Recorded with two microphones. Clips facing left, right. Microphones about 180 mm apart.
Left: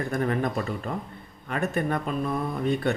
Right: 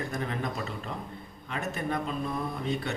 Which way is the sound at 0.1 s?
55° left (ahead or behind).